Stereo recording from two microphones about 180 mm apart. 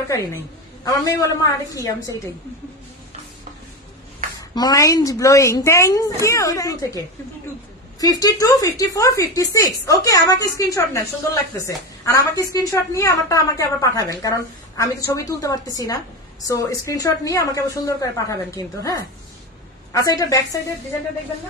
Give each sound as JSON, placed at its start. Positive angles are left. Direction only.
{"t": 0.1, "sound": "speech", "side_deg": 15}
{"t": 4.6, "sound": "speech", "side_deg": 20}
{"t": 8.0, "sound": "a woman's voice", "side_deg": 20}